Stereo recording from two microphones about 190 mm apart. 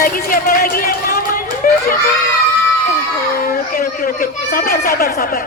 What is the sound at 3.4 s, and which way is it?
Speech, 50° left (ahead or behind).